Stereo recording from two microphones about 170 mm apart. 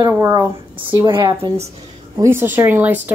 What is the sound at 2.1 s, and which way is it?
Speech, 15° right (ahead or behind).